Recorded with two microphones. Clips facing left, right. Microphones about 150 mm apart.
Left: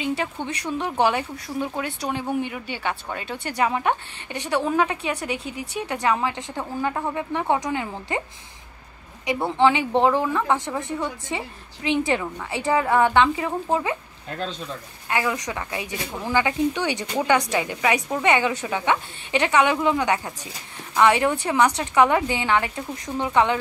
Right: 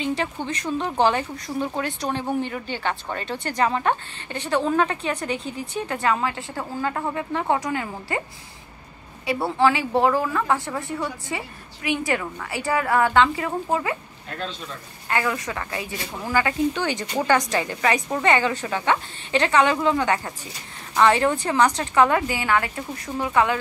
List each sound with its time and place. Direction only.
0.0 s a sound: 10° left (ahead or behind)
0.7 s a woman's voice: 10° left (ahead or behind)
9.3 s a woman's voice: 20° left (ahead or behind)
15.0 s a woman's voice: 15° left (ahead or behind)